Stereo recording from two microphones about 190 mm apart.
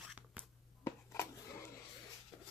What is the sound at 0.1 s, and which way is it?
Whispering, 5° right (ahead or behind).